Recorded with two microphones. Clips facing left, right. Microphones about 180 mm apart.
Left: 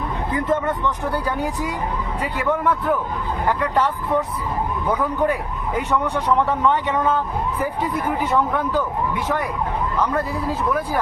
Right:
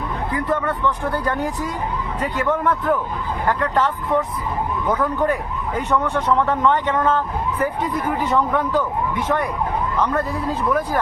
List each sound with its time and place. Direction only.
0.3 s a man's voice: 20° left (ahead or behind)
10.7 s a man's voice: 5° left (ahead or behind)